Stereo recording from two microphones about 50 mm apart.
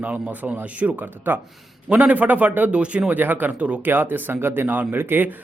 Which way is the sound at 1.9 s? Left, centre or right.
Right.